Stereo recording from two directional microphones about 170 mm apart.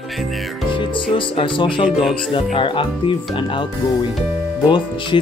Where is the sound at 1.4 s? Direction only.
30° left (ahead or behind).